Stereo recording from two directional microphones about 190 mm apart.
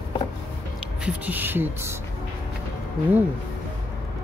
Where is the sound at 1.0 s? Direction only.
10° right (ahead or behind).